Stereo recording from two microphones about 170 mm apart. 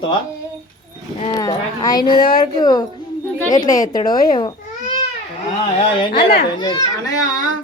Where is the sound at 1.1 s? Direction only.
30° left (ahead or behind).